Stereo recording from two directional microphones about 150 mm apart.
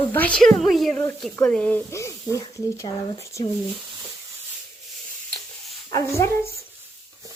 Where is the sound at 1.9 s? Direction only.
20° left (ahead or behind).